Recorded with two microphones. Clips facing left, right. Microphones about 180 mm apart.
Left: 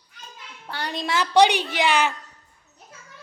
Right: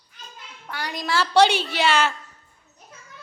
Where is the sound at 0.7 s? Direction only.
30° left (ahead or behind).